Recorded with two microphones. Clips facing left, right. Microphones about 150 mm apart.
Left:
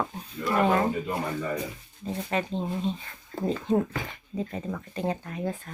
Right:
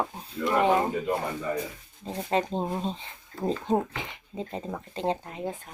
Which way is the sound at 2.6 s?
45° right (ahead or behind).